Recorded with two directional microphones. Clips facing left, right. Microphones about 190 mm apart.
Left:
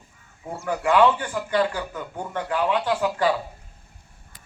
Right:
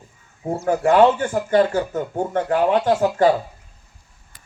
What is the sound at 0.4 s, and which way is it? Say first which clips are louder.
Speech: right 6 dB; 45° right (ahead or behind).